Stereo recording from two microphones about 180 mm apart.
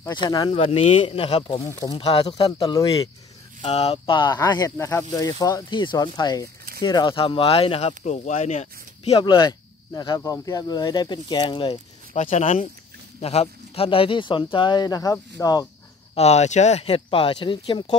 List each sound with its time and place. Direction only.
0.0 s speech: 25° left (ahead or behind)
0.6 s speech: 35° left (ahead or behind)
1.6 s speech: 15° left (ahead or behind)
2.0 s speech: 30° left (ahead or behind)
12.2 s speech: 40° left (ahead or behind); by 15.7 s 20° left (ahead or behind)
16.2 s speech: 40° left (ahead or behind)